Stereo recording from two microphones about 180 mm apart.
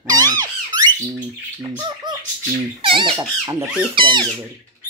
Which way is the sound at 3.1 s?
15° right (ahead or behind).